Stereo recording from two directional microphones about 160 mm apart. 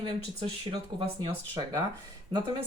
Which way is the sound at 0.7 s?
35° right (ahead or behind).